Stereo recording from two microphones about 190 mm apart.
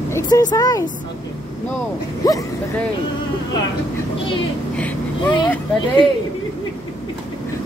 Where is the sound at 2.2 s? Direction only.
20° left (ahead or behind).